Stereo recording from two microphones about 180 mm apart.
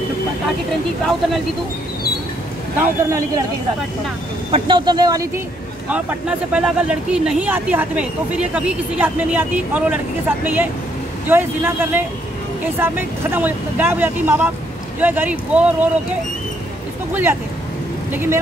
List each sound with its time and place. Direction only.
2.8 s speech: 15° right (ahead or behind)
4.5 s speech: 30° right (ahead or behind)
5.9 s speech: 5° right (ahead or behind)
17.1 s speech: 10° right (ahead or behind)